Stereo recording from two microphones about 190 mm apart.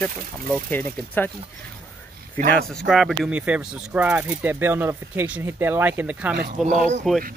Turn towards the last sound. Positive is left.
turn(degrees=-40)  # may be behind; listen again after turning